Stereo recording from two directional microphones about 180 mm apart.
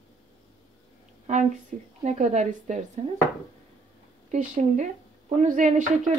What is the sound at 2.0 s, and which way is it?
Speech, 40° right (ahead or behind).